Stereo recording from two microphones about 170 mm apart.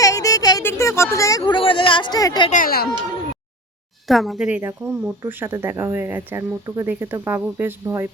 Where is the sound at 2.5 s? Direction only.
55° left (ahead or behind).